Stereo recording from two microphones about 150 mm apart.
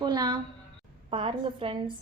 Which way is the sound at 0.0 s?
25° right (ahead or behind).